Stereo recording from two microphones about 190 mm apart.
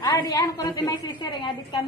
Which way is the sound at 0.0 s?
20° left (ahead or behind).